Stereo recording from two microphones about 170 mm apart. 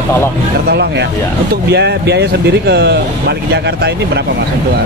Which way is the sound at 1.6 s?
75° right (ahead or behind).